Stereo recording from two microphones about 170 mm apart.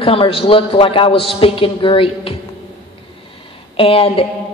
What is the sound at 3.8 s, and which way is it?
Speech, 35° left (ahead or behind).